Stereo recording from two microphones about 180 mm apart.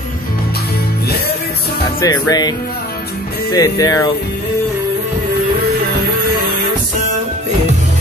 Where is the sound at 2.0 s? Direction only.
20° left (ahead or behind).